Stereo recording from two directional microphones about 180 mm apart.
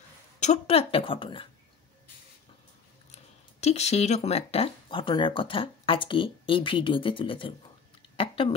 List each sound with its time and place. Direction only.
0.4 s a woman's voice: 35° left (ahead or behind)
3.6 s a woman's voice: 35° left (ahead or behind)